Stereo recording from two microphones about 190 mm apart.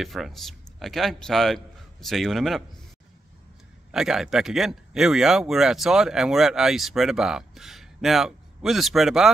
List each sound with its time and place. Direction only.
0.0 s speech: centre (ahead or behind)
3.9 s speech: 5° right (ahead or behind)